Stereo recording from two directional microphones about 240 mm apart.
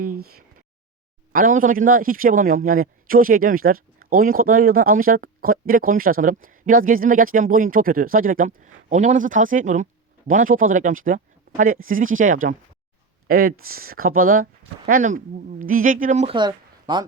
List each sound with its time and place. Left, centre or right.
1.3 s a man's voice: right; by 17.1 s centre